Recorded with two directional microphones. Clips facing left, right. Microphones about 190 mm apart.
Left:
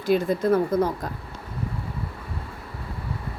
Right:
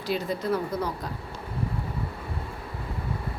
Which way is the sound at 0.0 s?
50° left (ahead or behind).